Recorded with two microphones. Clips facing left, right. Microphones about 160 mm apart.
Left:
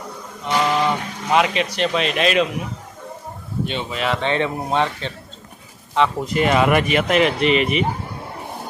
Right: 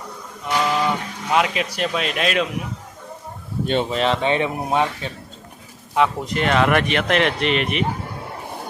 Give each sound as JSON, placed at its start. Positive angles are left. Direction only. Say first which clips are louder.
{"t": 0.6, "sound": "speech", "louder": "left 2 dB", "side_deg": 5}
{"t": 3.7, "sound": "speech", "louder": "right 5 dB", "side_deg": -40}
{"t": 4.2, "sound": "speech", "louder": "right 1 dB", "side_deg": -15}
{"t": 5.9, "sound": "speech", "louder": "left 1 dB", "side_deg": 0}